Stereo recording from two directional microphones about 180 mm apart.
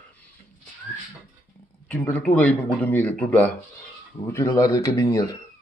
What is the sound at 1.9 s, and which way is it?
Speech, 10° left (ahead or behind).